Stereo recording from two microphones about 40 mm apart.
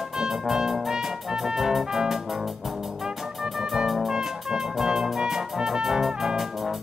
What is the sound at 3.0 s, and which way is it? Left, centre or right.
Music, centre.